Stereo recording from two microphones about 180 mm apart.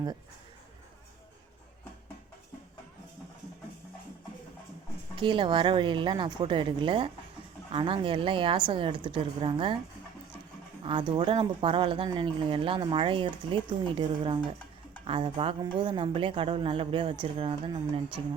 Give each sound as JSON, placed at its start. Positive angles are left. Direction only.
{"t": 5.1, "sound": "speech", "side_deg": -25}
{"t": 10.8, "sound": "speech", "side_deg": -30}